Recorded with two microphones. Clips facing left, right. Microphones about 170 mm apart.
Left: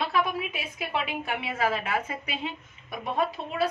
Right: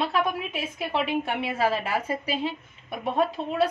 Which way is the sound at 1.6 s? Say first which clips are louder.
Right 1 dB; 35° right (ahead or behind).